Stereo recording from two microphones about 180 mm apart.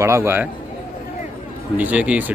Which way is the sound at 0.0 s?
15° right (ahead or behind).